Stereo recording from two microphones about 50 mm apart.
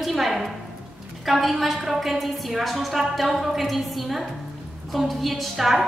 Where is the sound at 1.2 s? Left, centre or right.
Centre.